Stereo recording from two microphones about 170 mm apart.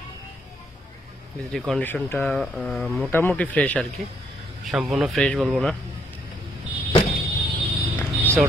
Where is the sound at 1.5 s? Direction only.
Centre (ahead or behind).